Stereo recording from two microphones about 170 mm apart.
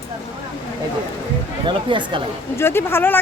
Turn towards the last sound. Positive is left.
turn(degrees=15)  # may be behind; listen again after turning